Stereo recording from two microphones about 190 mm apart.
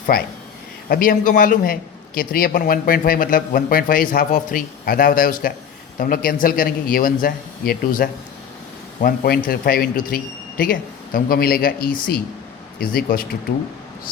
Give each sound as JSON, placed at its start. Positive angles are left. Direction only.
{"t": 0.1, "sound": "a man's voice", "side_deg": 50}